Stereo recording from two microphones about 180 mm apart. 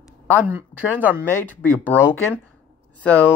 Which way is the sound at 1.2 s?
10° left (ahead or behind).